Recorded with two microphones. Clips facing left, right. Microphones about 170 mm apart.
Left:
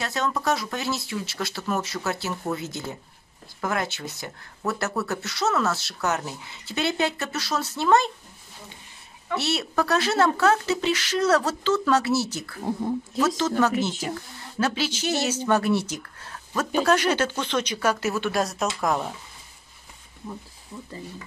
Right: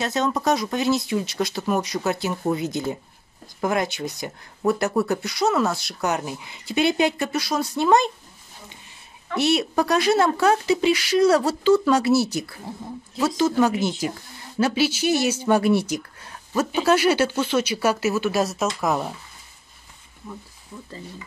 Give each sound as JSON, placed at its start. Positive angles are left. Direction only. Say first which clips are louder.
{"t": 0.0, "sound": "speech", "louder": "right 4 dB", "side_deg": -20}
{"t": 9.4, "sound": "speech", "louder": "right 6 dB", "side_deg": -15}